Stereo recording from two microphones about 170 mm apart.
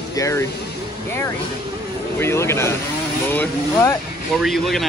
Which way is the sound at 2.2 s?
15° left (ahead or behind).